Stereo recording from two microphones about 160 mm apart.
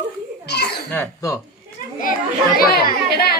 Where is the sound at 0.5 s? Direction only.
90° left.